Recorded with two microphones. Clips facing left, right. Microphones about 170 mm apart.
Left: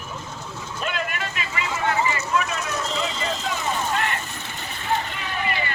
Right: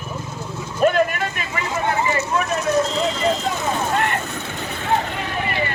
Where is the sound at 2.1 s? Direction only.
30° right (ahead or behind).